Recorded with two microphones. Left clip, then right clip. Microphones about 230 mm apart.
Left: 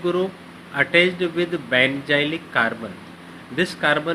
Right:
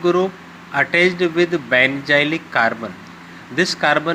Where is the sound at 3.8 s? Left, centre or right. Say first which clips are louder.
Right 3 dB; right.